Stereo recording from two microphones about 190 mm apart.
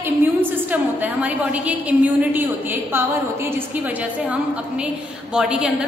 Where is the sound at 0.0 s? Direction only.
10° right (ahead or behind).